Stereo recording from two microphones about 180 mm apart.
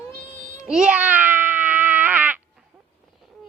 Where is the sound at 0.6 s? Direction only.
5° right (ahead or behind).